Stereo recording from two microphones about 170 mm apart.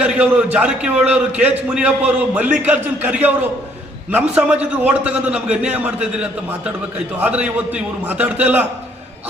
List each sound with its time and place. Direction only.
0.0 s a man's voice: 5° right (ahead or behind)